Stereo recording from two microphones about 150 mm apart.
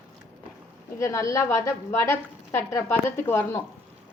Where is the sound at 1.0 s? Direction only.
20° left (ahead or behind).